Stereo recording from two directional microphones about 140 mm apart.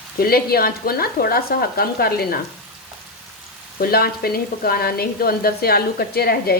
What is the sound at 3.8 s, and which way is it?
Speech, 90° left.